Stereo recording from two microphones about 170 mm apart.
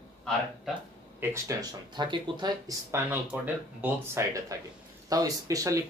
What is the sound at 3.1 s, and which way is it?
Speech, 10° right (ahead or behind).